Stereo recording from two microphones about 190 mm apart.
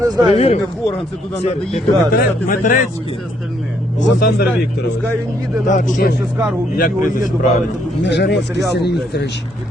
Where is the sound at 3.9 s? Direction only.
55° left (ahead or behind).